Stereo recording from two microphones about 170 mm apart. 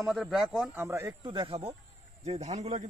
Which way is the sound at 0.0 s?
Centre (ahead or behind).